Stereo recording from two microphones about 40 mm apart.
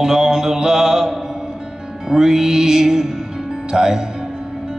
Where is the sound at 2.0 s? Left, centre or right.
Centre.